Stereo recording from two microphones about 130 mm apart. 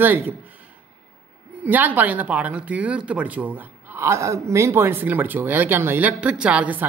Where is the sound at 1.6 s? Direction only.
15° right (ahead or behind).